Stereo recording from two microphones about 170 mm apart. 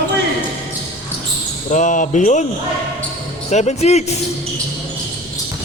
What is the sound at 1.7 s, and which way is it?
Speech, 45° left (ahead or behind).